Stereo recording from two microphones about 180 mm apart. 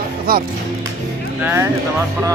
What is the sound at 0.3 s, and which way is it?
Music, 55° right (ahead or behind).